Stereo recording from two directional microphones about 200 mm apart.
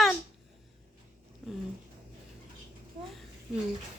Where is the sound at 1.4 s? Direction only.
Centre (ahead or behind).